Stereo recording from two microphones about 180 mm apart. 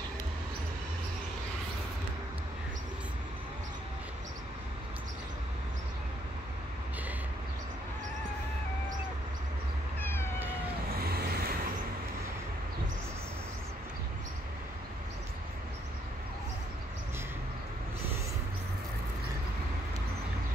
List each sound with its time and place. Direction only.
9.9 s cat: 10° left (ahead or behind)
11.0 s vehicle: 60° right (ahead or behind)